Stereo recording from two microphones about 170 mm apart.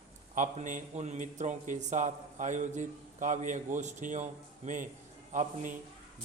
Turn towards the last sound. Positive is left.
turn(degrees=-45)  # may be behind; listen again after turning